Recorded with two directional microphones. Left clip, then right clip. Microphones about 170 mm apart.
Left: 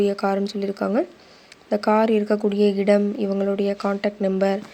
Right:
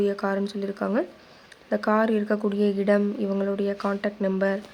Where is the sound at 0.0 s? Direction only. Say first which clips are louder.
Left 4 dB; 15° left (ahead or behind).